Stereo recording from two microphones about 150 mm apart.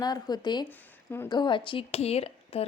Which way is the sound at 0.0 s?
25° left (ahead or behind).